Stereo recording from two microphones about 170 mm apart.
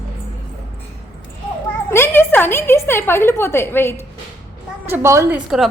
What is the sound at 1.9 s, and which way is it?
A woman's voice, 15° left (ahead or behind).